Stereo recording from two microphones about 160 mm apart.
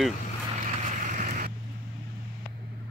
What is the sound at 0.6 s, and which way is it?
Vehicle, 50° right (ahead or behind).